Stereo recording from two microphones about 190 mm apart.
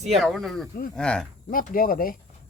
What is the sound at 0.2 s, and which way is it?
Speech, centre (ahead or behind).